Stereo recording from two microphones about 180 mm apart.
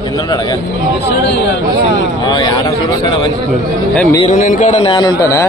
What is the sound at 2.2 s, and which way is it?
Speech, 25° left (ahead or behind).